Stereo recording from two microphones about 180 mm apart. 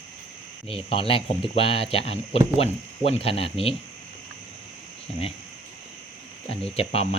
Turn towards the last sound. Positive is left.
turn(degrees=35)  # may be behind; listen again after turning